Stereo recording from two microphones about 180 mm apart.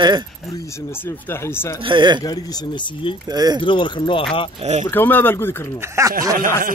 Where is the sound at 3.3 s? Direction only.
20° right (ahead or behind).